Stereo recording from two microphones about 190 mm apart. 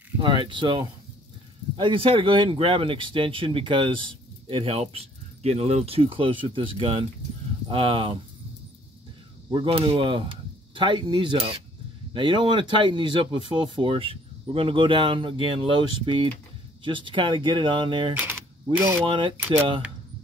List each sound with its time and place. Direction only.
0.2 s speech: 25° right (ahead or behind)
9.5 s speech: 30° right (ahead or behind)
18.8 s speech: 10° right (ahead or behind)
19.0 s speech: 25° right (ahead or behind)